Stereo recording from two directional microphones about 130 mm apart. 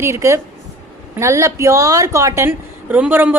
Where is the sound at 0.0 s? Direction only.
20° right (ahead or behind).